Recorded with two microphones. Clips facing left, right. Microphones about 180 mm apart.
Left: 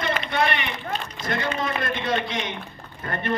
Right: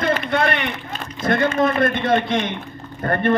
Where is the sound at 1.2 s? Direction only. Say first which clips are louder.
Right 10 dB; 55° right (ahead or behind).